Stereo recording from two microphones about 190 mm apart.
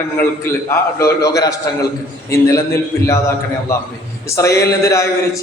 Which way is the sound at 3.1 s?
15° left (ahead or behind).